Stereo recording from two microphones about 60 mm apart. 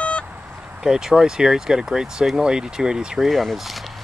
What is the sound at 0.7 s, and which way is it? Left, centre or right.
Speech, centre.